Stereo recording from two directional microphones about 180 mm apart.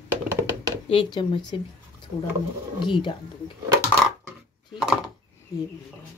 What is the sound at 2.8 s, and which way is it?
Speech, 25° left (ahead or behind).